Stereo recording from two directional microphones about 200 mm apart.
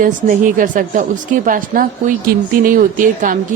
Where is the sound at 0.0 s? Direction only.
40° right (ahead or behind).